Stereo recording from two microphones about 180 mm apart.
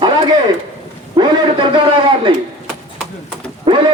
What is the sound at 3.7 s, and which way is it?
Speech, 30° right (ahead or behind).